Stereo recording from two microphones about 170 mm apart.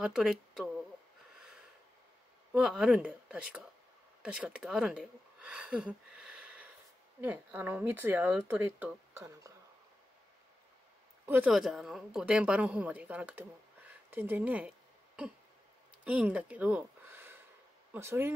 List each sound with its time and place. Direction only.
0.0 s speech: 5° right (ahead or behind)
2.5 s a woman's voice: 5° right (ahead or behind)
11.2 s a woman's voice: 10° right (ahead or behind)
16.0 s a woman's voice: 5° right (ahead or behind)